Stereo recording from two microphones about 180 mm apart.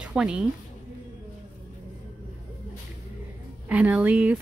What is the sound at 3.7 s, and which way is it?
Speech, 5° right (ahead or behind).